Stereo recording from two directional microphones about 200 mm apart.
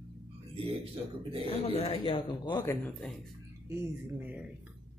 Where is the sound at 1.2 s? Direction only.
25° right (ahead or behind).